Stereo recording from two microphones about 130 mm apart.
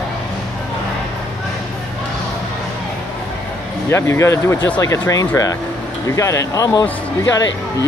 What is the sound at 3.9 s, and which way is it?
Speech, 20° left (ahead or behind).